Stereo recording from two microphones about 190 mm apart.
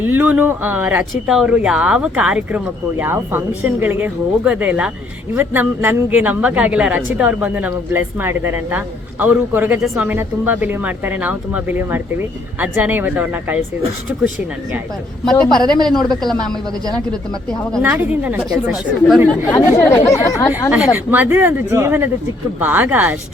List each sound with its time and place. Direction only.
0.0 s speech: 10° right (ahead or behind)
15.2 s a woman's voice: 5° left (ahead or behind)
17.8 s speech: 10° right (ahead or behind)
19.5 s speech: 15° left (ahead or behind)
20.5 s speech: 10° right (ahead or behind)